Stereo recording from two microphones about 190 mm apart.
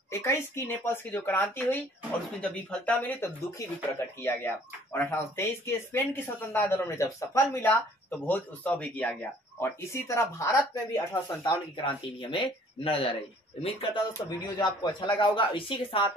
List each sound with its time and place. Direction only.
0.1 s speech: 15° left (ahead or behind); by 13.8 s 30° left (ahead or behind)
14.2 s speech: 20° left (ahead or behind)